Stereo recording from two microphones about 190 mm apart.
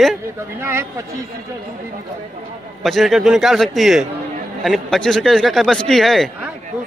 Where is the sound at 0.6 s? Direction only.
15° right (ahead or behind).